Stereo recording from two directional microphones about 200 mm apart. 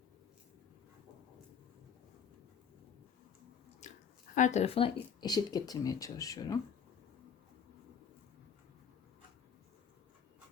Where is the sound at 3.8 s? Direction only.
35° left (ahead or behind).